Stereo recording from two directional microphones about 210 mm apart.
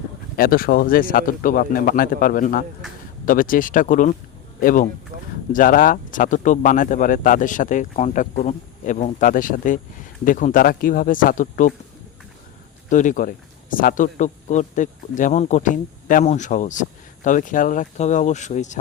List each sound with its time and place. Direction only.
0.3 s a man's voice: 45° left (ahead or behind)
12.9 s speech: 35° left (ahead or behind)